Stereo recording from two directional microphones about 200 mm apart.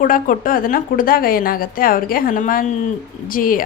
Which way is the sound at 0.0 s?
45° left (ahead or behind).